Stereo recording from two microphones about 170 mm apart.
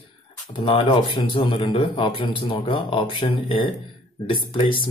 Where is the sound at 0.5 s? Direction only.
30° left (ahead or behind).